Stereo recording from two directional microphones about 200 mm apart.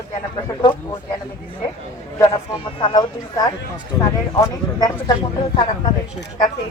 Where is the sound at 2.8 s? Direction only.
25° left (ahead or behind).